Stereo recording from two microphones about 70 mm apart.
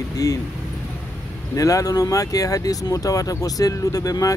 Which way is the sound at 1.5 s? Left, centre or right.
Left.